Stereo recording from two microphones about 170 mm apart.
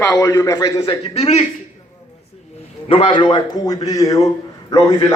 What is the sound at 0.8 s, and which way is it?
Speech, 35° left (ahead or behind).